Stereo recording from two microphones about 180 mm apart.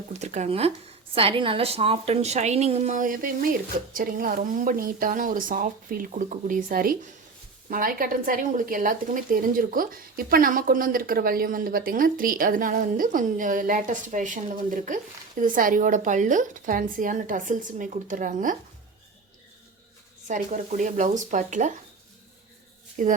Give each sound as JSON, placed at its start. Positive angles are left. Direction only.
{"t": 0.1, "sound": "a woman's voice", "side_deg": -40}
{"t": 20.2, "sound": "speech", "side_deg": -45}
{"t": 23.0, "sound": "speech", "side_deg": -45}